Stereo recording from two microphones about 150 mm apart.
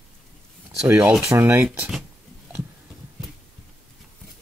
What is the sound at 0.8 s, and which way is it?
Speech, 15° right (ahead or behind).